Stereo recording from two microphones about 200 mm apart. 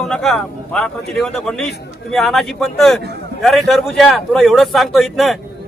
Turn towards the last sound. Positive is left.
turn(degrees=0)  # may be behind; listen again after turning